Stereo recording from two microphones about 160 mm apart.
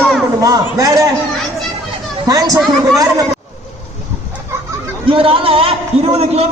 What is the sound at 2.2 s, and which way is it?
A man's voice, 20° right (ahead or behind).